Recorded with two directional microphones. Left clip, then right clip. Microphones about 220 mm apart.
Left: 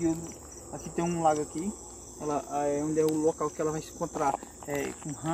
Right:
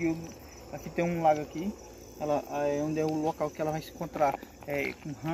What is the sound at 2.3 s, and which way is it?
Speech, 50° right (ahead or behind).